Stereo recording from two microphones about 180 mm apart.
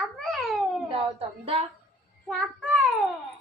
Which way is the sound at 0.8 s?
30° right (ahead or behind).